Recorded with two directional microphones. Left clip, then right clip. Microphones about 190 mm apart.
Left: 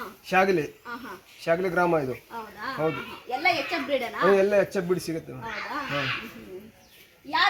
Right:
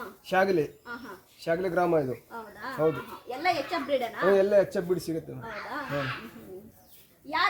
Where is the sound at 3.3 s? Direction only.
50° left (ahead or behind).